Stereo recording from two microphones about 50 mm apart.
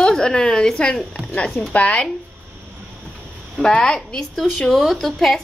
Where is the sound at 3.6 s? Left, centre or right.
Centre.